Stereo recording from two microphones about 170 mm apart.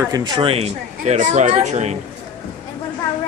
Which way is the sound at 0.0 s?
25° right (ahead or behind).